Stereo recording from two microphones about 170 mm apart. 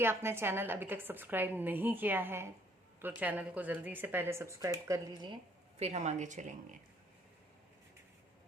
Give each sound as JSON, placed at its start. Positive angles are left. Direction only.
{"t": 0.0, "sound": "speech", "side_deg": -15}